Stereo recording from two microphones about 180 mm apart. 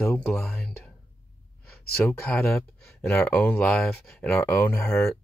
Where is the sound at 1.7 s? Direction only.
5° left (ahead or behind).